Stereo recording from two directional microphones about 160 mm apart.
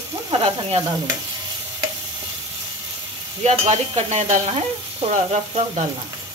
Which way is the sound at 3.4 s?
45° right (ahead or behind).